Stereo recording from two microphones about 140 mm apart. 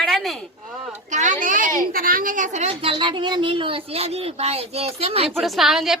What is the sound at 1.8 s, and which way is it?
A woman's voice, 90° right.